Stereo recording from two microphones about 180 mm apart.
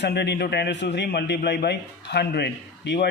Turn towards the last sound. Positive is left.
turn(degrees=70)  # may be behind; listen again after turning